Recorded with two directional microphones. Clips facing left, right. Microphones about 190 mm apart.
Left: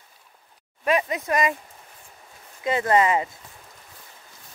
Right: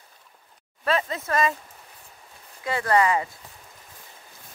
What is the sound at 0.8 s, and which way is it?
Speech, 15° left (ahead or behind).